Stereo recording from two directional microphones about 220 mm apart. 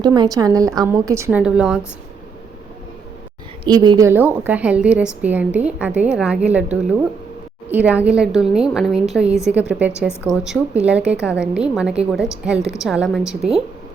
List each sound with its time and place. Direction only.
0.0 s a woman's voice: 20° right (ahead or behind)
3.6 s a woman's voice: 20° right (ahead or behind); by 13.5 s centre (ahead or behind)